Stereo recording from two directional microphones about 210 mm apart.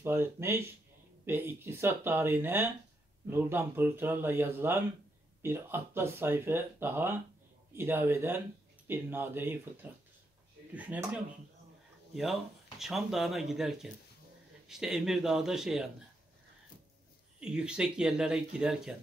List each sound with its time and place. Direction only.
0.0 s speech: 10° right (ahead or behind)
12.7 s speech: centre (ahead or behind)
17.4 s speech: 5° right (ahead or behind)